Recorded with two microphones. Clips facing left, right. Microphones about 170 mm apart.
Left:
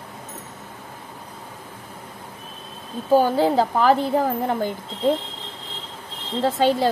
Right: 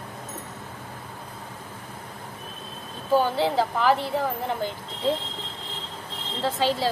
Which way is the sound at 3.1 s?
45° left (ahead or behind).